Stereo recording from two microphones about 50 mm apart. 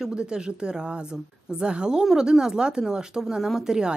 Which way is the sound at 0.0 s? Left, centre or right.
Centre.